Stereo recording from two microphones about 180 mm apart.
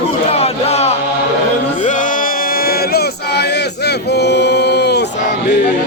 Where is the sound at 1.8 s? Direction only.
45° left (ahead or behind); by 5.0 s 65° left (ahead or behind).